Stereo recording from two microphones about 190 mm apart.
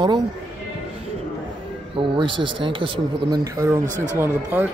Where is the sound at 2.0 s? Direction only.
25° right (ahead or behind).